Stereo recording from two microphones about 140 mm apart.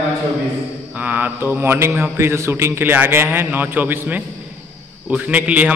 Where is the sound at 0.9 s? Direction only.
10° right (ahead or behind).